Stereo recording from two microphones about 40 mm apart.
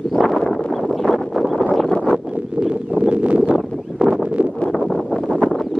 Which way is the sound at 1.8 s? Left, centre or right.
Left.